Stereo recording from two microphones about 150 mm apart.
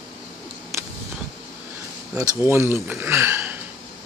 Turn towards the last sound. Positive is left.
turn(degrees=-15)  # may be behind; listen again after turning